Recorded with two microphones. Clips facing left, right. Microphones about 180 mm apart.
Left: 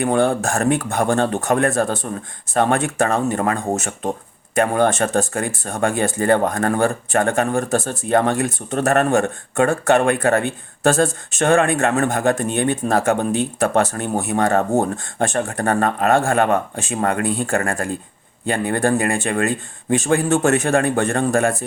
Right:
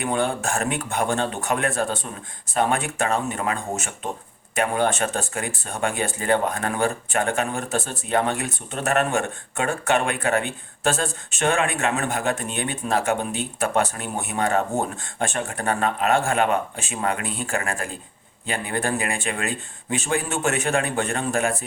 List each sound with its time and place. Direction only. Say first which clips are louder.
0.0 s speech: left 6 dB; 50° left (ahead or behind)